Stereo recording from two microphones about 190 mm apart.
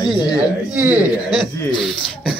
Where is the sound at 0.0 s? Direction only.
20° left (ahead or behind).